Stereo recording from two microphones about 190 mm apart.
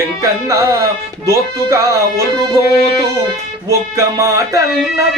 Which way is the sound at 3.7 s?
15° right (ahead or behind).